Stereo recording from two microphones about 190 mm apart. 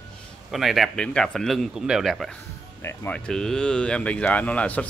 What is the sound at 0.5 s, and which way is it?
A man's voice, centre (ahead or behind).